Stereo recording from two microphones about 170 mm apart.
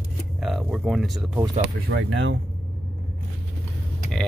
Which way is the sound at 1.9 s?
90° right.